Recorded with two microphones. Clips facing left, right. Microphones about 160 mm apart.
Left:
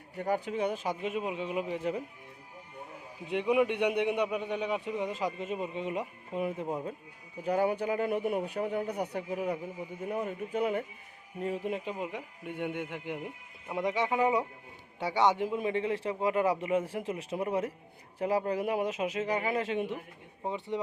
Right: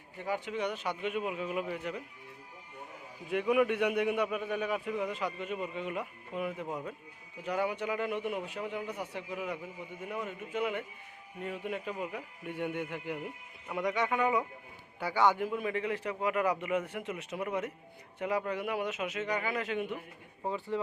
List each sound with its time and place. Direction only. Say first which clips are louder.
0.2 s a man's voice: left 4 dB; 40° left (ahead or behind)
3.2 s a man's voice: left 1 dB; 20° left (ahead or behind)
20.4 s a man's voice: even; 20° left (ahead or behind)